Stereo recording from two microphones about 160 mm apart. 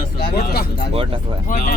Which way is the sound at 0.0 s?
70° left (ahead or behind).